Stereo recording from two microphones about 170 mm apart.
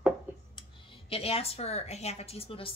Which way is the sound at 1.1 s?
35° left (ahead or behind).